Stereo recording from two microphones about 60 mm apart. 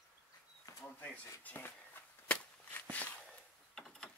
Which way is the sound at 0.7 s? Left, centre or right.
Left.